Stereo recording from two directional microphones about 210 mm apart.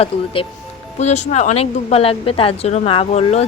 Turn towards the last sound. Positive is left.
turn(degrees=30)  # may be behind; listen again after turning